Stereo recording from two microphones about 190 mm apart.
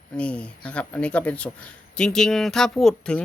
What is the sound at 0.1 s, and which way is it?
Speech, 5° left (ahead or behind).